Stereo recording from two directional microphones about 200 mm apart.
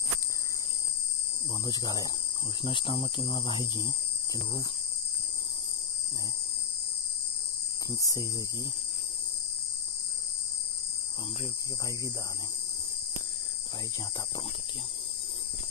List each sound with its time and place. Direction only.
1.7 s speech: 20° left (ahead or behind)
7.9 s speech: 20° left (ahead or behind)